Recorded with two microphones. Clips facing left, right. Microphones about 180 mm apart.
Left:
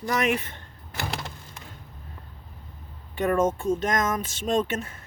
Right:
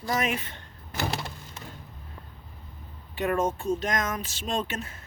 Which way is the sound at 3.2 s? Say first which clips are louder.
Left 3 dB; 50° left (ahead or behind).